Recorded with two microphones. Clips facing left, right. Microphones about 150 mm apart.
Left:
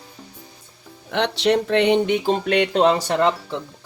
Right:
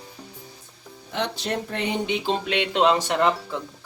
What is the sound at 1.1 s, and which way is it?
Speech, 75° left (ahead or behind).